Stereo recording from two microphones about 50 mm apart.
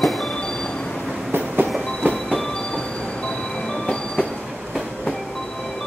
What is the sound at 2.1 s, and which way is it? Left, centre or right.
Train, centre.